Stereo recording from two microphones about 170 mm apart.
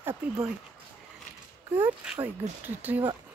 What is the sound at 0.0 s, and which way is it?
Speech, 15° right (ahead or behind).